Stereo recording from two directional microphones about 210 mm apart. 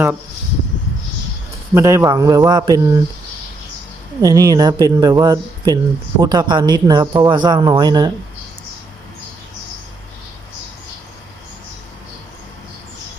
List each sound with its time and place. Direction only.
1.7 s speech: 15° right (ahead or behind)
4.2 s speech: 15° right (ahead or behind)